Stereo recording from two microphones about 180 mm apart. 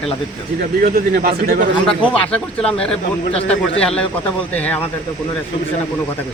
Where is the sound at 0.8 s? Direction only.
55° right (ahead or behind).